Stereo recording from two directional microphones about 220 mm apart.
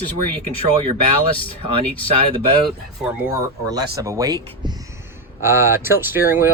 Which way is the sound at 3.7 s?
15° right (ahead or behind).